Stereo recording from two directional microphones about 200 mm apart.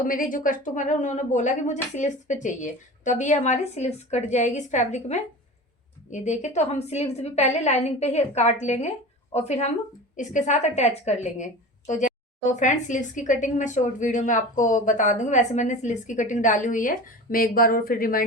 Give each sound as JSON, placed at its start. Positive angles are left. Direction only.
{"t": 0.0, "sound": "a woman's voice", "side_deg": 45}